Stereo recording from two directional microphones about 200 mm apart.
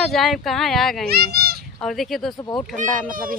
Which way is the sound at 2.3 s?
20° left (ahead or behind).